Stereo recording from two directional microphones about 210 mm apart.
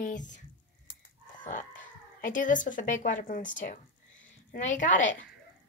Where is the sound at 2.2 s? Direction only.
40° left (ahead or behind).